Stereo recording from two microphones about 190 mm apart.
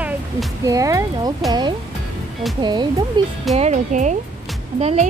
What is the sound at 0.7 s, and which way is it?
Speech, 15° right (ahead or behind).